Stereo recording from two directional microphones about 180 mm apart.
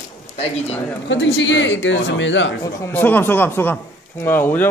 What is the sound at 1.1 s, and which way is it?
Speech, 85° left.